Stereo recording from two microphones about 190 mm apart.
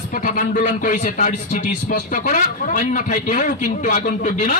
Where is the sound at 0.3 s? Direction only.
40° left (ahead or behind).